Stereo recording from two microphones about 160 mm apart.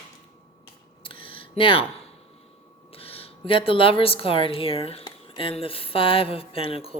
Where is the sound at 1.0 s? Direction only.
35° left (ahead or behind).